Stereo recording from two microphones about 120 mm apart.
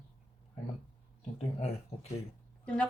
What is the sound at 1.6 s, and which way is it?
Speech, 65° left (ahead or behind).